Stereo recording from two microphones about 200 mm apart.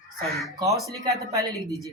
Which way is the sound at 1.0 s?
15° right (ahead or behind).